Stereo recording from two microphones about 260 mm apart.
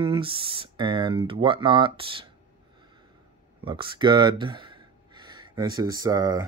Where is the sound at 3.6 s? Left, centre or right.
Centre.